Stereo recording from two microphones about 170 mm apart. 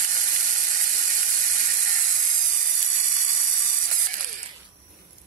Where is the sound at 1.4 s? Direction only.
50° right (ahead or behind).